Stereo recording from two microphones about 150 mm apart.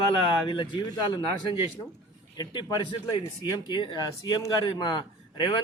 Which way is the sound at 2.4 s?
25° left (ahead or behind).